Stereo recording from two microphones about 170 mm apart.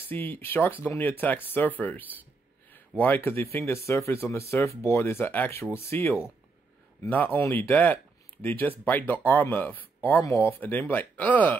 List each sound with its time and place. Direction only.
0.1 s speech: 10° left (ahead or behind)